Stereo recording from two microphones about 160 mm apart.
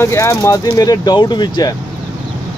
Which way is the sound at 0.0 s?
15° left (ahead or behind).